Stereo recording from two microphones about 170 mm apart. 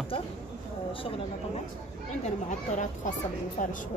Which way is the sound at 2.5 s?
45° left (ahead or behind).